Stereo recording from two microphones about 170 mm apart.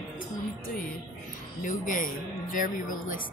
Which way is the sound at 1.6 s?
50° left (ahead or behind).